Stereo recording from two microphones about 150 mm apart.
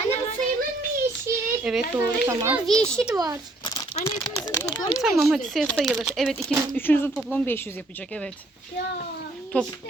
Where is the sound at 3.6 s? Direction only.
30° left (ahead or behind).